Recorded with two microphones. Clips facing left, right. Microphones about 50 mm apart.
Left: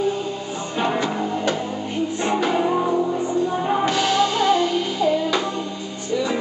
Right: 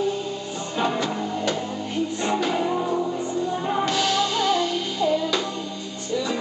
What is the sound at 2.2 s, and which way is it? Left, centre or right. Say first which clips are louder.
Music: left 4 dB; centre.